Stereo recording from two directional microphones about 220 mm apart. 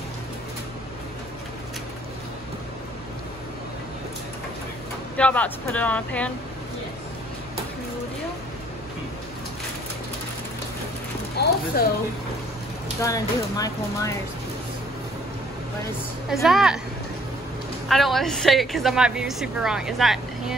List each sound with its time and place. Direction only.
5.1 s a woman's voice: 5° left (ahead or behind)
11.3 s clip-clop: 45° left (ahead or behind)
13.0 s speech: 15° left (ahead or behind)
16.4 s a woman's voice: centre (ahead or behind)
17.8 s a woman's voice: centre (ahead or behind)